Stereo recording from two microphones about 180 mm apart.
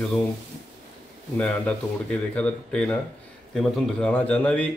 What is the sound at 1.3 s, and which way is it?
A man's voice, 5° left (ahead or behind).